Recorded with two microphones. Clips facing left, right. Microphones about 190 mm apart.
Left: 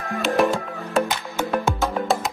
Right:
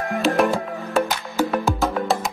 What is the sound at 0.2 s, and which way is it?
Music, centre (ahead or behind).